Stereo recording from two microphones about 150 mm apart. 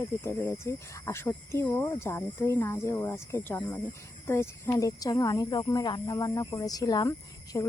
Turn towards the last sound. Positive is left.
turn(degrees=25)  # may be behind; listen again after turning